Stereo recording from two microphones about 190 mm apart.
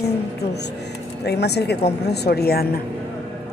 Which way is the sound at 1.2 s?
60° left (ahead or behind).